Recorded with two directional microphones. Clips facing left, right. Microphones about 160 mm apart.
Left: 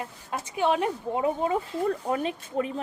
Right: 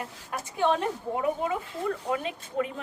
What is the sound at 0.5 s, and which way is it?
Speech, 15° left (ahead or behind).